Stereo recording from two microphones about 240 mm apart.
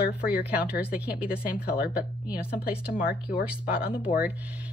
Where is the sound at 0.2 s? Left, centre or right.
Centre.